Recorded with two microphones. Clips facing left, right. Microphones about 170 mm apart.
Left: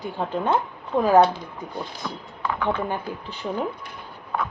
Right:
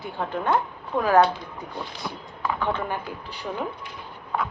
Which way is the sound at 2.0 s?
15° right (ahead or behind).